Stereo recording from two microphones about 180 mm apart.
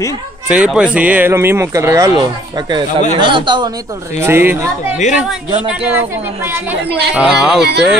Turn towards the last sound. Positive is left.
turn(degrees=-65)  # may be behind; listen again after turning